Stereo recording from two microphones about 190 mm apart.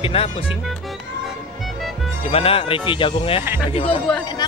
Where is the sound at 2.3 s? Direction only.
30° left (ahead or behind).